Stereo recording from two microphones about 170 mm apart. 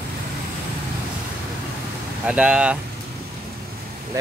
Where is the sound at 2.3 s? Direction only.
5° right (ahead or behind).